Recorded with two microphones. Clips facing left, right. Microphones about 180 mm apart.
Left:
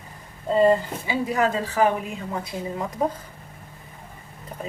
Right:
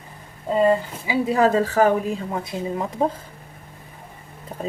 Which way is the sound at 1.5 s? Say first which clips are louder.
Right 4 dB; 45° right (ahead or behind).